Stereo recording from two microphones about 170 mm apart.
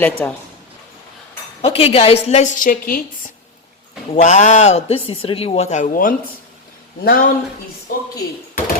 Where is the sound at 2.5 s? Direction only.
50° left (ahead or behind).